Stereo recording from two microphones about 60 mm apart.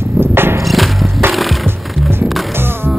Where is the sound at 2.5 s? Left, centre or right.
Right.